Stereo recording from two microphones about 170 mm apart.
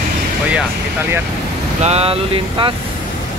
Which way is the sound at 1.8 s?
35° right (ahead or behind).